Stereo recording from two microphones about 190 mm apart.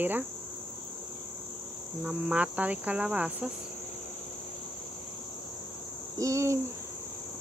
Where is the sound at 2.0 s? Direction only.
5° right (ahead or behind).